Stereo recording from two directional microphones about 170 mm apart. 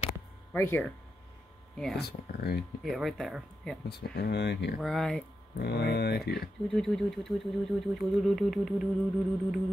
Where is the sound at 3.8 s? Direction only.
70° left (ahead or behind); by 4.8 s 90° left.